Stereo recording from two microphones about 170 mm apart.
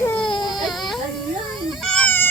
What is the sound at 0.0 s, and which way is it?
Baby cry, 5° left (ahead or behind).